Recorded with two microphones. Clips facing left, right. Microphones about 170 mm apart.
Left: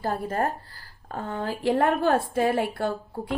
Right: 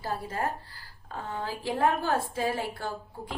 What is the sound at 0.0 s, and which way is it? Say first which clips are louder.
A woman's voice: left 5 dB; 50° left (ahead or behind).